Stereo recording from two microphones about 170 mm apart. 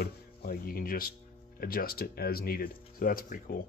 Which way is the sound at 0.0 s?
65° left (ahead or behind).